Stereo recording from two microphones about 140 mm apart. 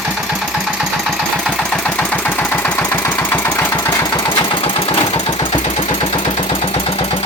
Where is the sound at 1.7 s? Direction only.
5° left (ahead or behind); by 4.4 s 25° left (ahead or behind).